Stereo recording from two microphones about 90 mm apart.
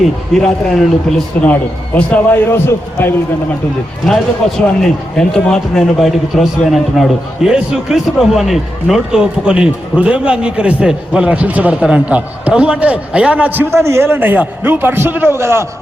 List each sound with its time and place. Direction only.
0.3 s a man's voice: 5° left (ahead or behind)
1.4 s a man's voice: 15° left (ahead or behind)
2.5 s a man's voice: 25° left (ahead or behind)
4.0 s a man's voice: 5° left (ahead or behind); by 15.6 s 30° right (ahead or behind)